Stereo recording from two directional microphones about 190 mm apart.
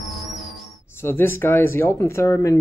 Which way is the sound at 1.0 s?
10° left (ahead or behind).